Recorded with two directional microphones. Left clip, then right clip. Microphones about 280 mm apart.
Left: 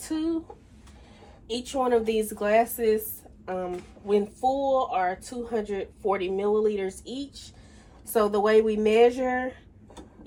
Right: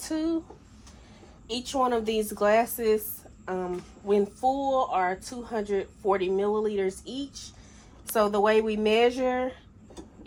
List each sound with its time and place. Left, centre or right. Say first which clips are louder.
1.5 s a woman's voice: left 1 dB; right
6.8 s speech: right 2 dB; right
8.1 s a woman's voice: left 1 dB; centre